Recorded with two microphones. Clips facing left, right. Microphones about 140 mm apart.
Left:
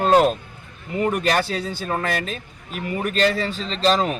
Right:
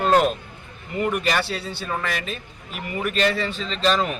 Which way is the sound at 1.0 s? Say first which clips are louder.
Left 3 dB; 40° left (ahead or behind).